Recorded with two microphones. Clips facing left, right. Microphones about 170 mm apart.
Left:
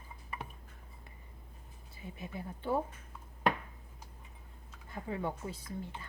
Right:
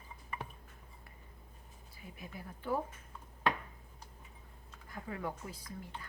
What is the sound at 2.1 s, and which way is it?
Speech, 25° left (ahead or behind).